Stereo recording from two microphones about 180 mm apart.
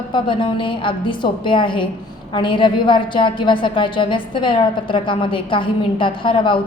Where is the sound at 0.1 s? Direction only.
30° left (ahead or behind).